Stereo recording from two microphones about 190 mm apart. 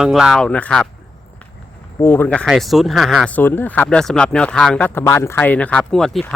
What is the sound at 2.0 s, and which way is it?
Speech, 10° left (ahead or behind).